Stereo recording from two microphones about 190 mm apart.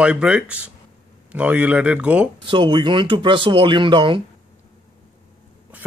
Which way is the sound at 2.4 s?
25° right (ahead or behind).